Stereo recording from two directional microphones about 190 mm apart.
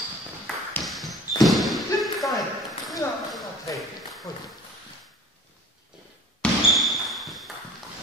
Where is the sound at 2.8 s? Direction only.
Centre (ahead or behind).